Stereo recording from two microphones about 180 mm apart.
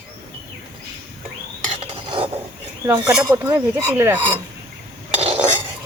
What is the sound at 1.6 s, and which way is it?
Stir, 35° right (ahead or behind).